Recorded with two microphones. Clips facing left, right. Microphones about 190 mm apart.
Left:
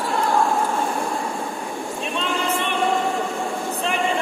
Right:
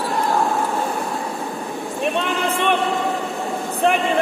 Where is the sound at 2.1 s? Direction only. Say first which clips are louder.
Right 2 dB; 55° right (ahead or behind).